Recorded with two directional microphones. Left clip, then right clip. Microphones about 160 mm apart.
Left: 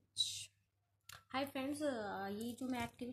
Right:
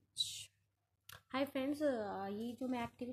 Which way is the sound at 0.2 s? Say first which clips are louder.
Left 1 dB; 60° right (ahead or behind).